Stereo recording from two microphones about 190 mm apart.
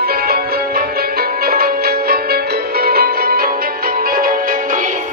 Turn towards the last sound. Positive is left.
turn(degrees=-45)  # may be behind; listen again after turning